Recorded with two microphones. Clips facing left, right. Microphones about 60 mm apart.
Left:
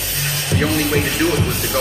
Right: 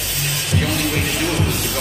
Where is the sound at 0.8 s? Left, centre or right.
Left.